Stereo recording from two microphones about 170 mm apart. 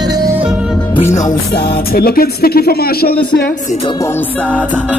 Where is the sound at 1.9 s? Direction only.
65° left (ahead or behind).